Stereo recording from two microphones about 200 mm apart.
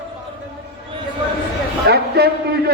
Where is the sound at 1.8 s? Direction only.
55° right (ahead or behind).